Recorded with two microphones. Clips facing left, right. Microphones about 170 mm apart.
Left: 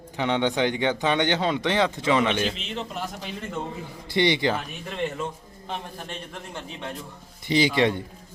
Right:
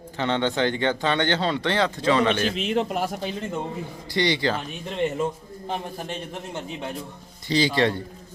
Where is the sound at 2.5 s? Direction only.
55° right (ahead or behind).